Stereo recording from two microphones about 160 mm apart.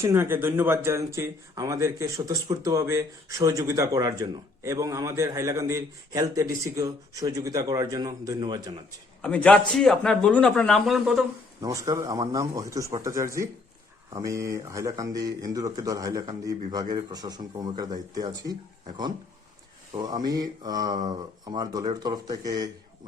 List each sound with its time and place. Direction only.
0.0 s speech: 15° right (ahead or behind)
9.2 s speech: 5° left (ahead or behind)
11.6 s speech: 20° right (ahead or behind)
20.0 s speech: 25° right (ahead or behind)